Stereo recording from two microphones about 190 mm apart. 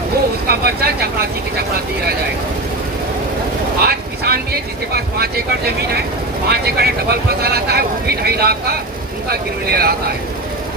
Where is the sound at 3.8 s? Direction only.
55° right (ahead or behind).